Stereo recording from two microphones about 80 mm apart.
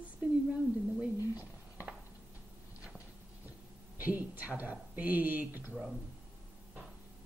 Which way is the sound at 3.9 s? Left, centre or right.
Right.